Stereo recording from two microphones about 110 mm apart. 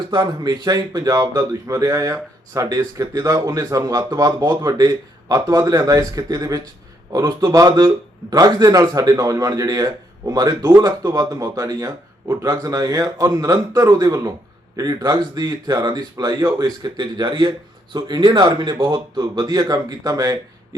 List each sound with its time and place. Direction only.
0.1 s a man's voice: 40° right (ahead or behind)